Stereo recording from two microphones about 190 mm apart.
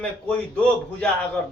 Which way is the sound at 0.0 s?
5° left (ahead or behind).